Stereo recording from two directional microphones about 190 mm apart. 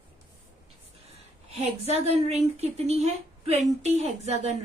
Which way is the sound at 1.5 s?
35° right (ahead or behind).